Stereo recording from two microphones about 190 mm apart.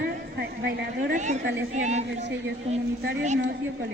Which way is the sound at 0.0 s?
60° right (ahead or behind).